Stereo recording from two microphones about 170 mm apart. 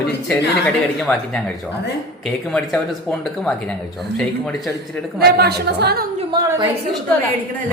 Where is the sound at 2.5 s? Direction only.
5° left (ahead or behind).